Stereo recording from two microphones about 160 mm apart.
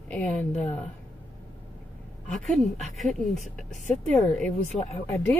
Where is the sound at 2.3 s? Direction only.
Centre (ahead or behind).